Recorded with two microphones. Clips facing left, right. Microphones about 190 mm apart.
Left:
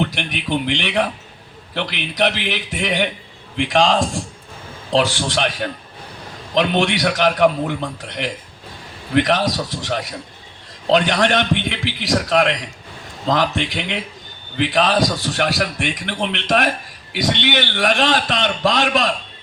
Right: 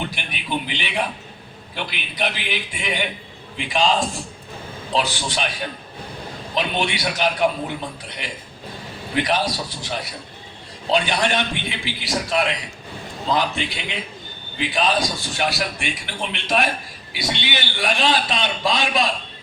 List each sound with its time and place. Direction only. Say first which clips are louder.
0.0 s a man's voice: left 7 dB; 80° left
6.5 s a man's voice: left 6 dB; 80° left
15.1 s a man's voice: left 4 dB; 70° left (ahead or behind)
17.4 s a man's voice: left 6 dB; 90° left